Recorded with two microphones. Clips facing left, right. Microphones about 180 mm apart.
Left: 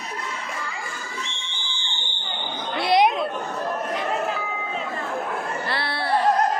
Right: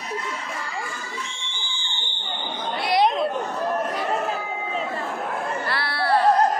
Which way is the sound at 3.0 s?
5° left (ahead or behind).